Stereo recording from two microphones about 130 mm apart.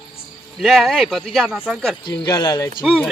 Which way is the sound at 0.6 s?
5° right (ahead or behind).